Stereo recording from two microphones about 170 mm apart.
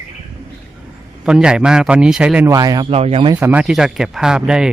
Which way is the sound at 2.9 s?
35° right (ahead or behind).